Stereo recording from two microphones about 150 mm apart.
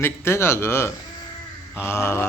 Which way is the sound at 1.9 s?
15° left (ahead or behind).